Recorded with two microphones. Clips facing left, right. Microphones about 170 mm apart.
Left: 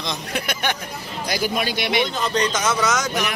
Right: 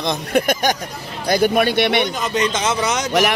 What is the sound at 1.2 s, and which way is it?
Speech, 55° right (ahead or behind).